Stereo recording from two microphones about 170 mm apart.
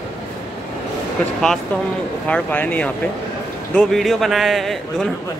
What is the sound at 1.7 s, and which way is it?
Speech, 10° left (ahead or behind).